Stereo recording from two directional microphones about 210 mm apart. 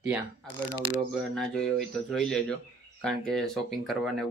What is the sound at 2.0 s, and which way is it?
Speech, centre (ahead or behind).